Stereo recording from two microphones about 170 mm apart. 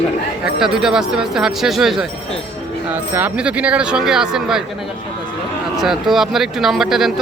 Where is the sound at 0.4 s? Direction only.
5° right (ahead or behind).